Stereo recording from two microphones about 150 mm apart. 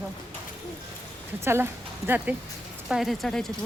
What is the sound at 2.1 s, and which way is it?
Speech, 10° right (ahead or behind).